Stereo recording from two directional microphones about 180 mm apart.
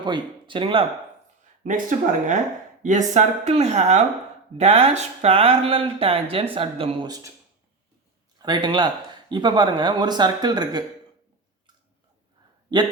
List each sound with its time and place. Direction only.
0.0 s speech: 25° right (ahead or behind)
1.6 s speech: 45° right (ahead or behind); by 7.3 s 25° right (ahead or behind)
8.4 s speech: 25° right (ahead or behind)